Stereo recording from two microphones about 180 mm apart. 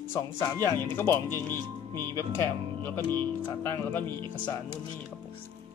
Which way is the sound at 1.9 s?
20° right (ahead or behind).